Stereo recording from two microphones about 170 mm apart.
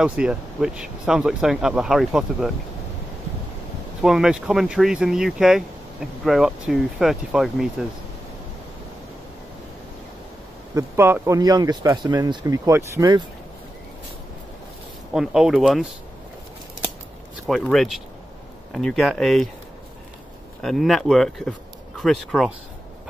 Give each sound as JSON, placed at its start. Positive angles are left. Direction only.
{"t": 0.0, "sound": "speech", "side_deg": -5}
{"t": 4.0, "sound": "speech", "side_deg": -5}
{"t": 10.7, "sound": "speech", "side_deg": -15}
{"t": 15.1, "sound": "speech", "side_deg": -5}
{"t": 17.5, "sound": "speech", "side_deg": 0}
{"t": 20.6, "sound": "speech", "side_deg": 0}